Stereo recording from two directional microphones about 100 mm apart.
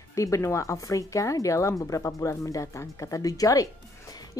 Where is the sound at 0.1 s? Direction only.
30° left (ahead or behind).